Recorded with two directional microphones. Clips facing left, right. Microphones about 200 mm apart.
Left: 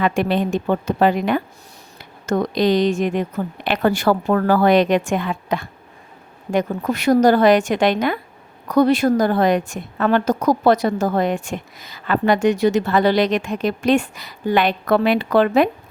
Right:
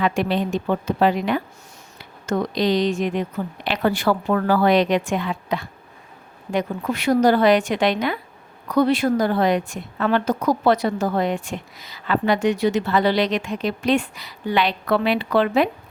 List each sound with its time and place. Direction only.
0.0 s a woman's voice: 50° left (ahead or behind)